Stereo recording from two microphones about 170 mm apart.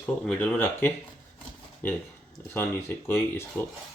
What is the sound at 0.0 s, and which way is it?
Speech, 10° left (ahead or behind).